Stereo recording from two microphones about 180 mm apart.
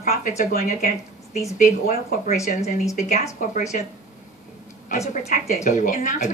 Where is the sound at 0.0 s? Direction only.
40° left (ahead or behind).